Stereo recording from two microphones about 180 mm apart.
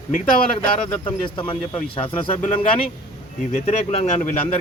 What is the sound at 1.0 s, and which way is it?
Speech, 30° left (ahead or behind).